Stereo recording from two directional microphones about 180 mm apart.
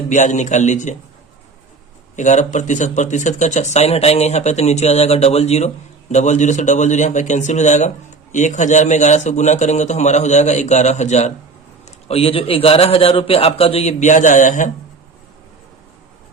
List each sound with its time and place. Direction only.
0.1 s a man's voice: 45° left (ahead or behind)
2.1 s speech: 40° left (ahead or behind)